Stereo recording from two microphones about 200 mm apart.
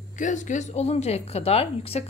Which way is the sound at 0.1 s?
40° left (ahead or behind).